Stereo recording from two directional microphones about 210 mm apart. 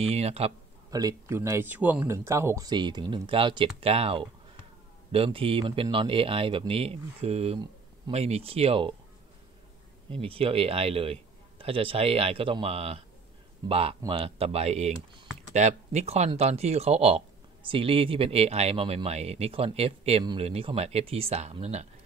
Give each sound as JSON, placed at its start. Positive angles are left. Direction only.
{"t": 0.0, "sound": "speech", "side_deg": -30}
{"t": 0.8, "sound": "speech", "side_deg": -15}
{"t": 10.0, "sound": "speech", "side_deg": -25}